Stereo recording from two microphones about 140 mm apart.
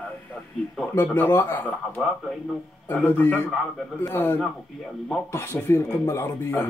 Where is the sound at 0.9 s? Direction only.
15° left (ahead or behind).